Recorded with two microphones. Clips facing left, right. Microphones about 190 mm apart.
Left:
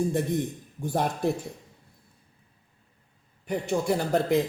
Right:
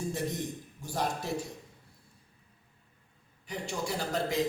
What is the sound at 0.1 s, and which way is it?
A man's voice, 55° left (ahead or behind).